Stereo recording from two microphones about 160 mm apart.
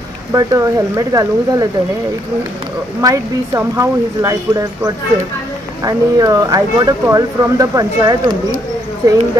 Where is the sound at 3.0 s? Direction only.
20° right (ahead or behind).